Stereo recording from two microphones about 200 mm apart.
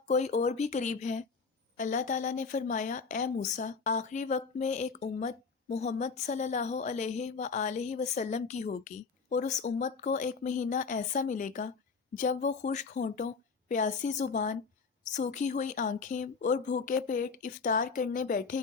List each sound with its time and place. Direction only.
0.1 s speech: 35° left (ahead or behind)